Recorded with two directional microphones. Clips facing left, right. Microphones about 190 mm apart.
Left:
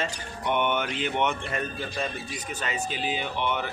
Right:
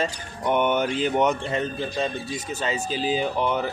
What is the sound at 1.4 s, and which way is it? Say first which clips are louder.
Speech: right 5 dB; 25° right (ahead or behind).